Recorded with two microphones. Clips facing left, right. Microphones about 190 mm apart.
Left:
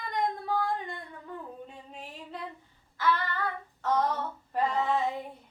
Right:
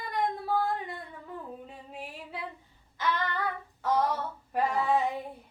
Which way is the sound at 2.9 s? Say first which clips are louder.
Left 2 dB; 20° right (ahead or behind).